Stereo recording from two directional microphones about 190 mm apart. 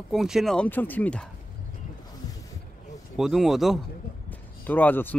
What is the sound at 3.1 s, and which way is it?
Speech, centre (ahead or behind).